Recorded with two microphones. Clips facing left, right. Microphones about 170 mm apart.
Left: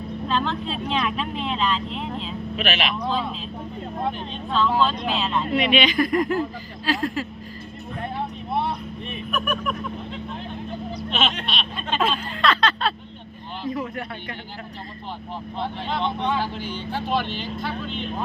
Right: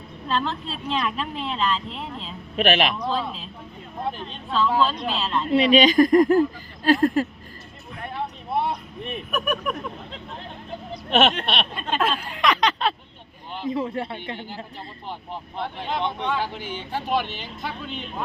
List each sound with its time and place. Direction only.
0.3 s speech: centre (ahead or behind)
2.6 s speech: 50° right (ahead or behind)
4.5 s speech: 5° right (ahead or behind)
5.5 s speech: 35° right (ahead or behind); by 7.3 s 50° right (ahead or behind)
9.3 s speech: 15° right (ahead or behind)
11.1 s a sound: 65° right (ahead or behind)
11.9 s speech: 5° right (ahead or behind); by 14.3 s 25° right (ahead or behind)
15.5 s speech: 15° right (ahead or behind)